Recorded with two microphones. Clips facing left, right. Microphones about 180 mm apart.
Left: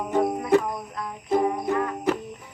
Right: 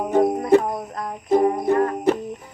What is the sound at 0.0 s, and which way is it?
Music, 40° right (ahead or behind).